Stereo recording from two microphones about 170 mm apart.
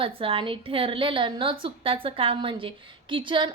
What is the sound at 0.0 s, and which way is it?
A woman's voice, 30° right (ahead or behind).